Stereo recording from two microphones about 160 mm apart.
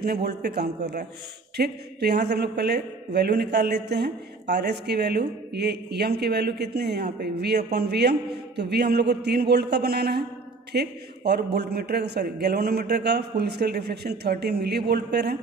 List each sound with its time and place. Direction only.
0.0 s a man's voice: 80° right